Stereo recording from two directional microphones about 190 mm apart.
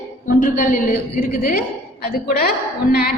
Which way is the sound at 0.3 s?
45° left (ahead or behind).